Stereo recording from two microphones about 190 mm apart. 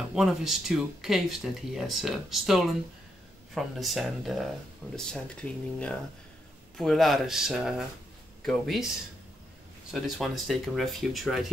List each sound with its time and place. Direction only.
0.1 s speech: centre (ahead or behind)